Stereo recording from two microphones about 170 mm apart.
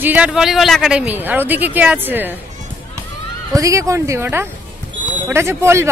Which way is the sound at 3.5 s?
20° right (ahead or behind).